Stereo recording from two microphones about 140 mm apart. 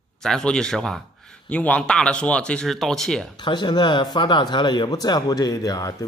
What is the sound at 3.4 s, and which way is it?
Speech, 30° left (ahead or behind).